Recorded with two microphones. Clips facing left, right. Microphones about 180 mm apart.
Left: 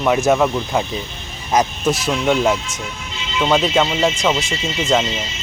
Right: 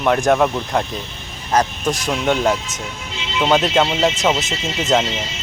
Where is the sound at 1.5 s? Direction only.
10° left (ahead or behind).